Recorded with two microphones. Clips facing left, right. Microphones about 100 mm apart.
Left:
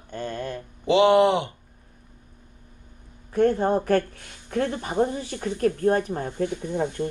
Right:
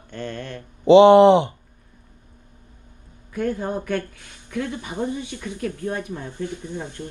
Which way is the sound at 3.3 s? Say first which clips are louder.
Left 5 dB; 30° left (ahead or behind).